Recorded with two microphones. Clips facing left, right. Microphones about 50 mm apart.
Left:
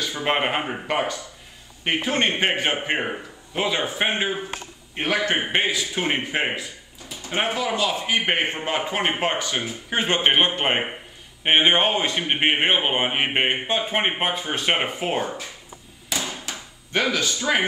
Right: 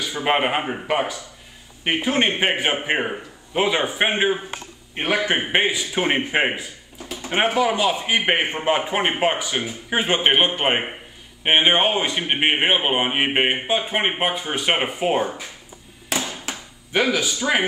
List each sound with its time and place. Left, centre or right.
0.0 s a man's voice: centre
16.9 s a man's voice: centre